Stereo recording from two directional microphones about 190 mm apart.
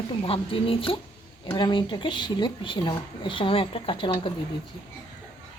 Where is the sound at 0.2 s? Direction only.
30° left (ahead or behind).